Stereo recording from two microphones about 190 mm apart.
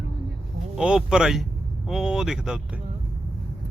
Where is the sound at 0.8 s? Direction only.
5° right (ahead or behind).